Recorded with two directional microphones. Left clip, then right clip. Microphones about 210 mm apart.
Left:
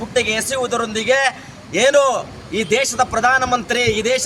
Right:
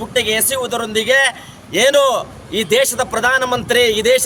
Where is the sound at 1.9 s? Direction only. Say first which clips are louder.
Right 1 dB; 15° right (ahead or behind).